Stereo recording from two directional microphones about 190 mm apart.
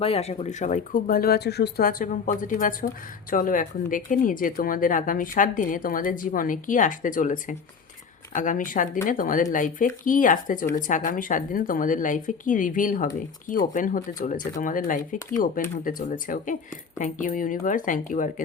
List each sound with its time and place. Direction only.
0.0 s speech: 30° left (ahead or behind)